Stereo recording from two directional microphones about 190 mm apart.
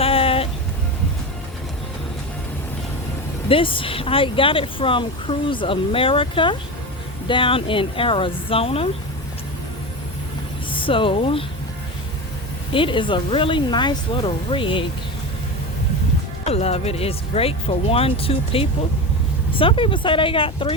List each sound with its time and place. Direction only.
0.0 s music: 30° left (ahead or behind)
3.5 s speech: 25° left (ahead or behind)
10.7 s speech: 25° left (ahead or behind)
12.7 s speech: 25° left (ahead or behind)
16.5 s speech: 30° left (ahead or behind)